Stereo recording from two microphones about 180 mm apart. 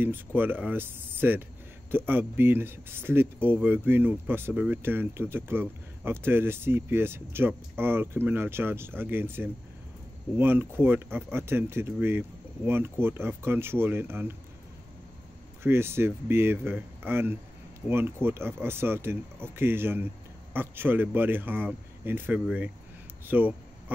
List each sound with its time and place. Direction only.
0.0 s speech: 10° right (ahead or behind)
15.6 s speech: 15° right (ahead or behind)